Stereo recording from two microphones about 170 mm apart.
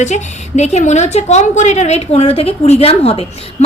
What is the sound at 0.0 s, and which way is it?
A woman's voice, 45° left (ahead or behind).